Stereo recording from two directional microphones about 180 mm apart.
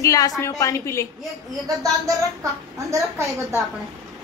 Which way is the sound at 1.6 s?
20° right (ahead or behind).